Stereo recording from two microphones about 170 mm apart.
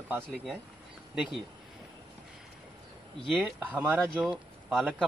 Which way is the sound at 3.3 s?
10° right (ahead or behind).